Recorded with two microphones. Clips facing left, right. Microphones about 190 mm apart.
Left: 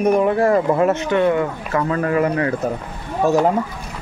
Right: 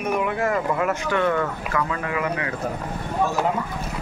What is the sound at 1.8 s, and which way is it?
Speech, 40° left (ahead or behind).